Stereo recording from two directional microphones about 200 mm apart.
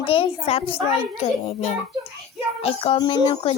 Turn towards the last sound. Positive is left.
turn(degrees=25)  # may be behind; listen again after turning